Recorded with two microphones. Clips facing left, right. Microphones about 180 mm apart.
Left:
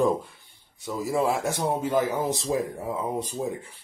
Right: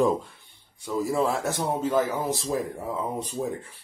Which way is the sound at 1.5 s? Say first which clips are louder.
Even; 15° left (ahead or behind).